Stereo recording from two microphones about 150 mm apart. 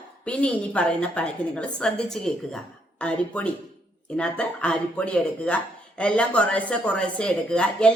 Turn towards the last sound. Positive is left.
turn(degrees=5)  # may be behind; listen again after turning